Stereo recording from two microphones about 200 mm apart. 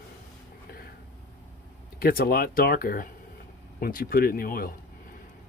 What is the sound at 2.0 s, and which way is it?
Speech, 50° left (ahead or behind).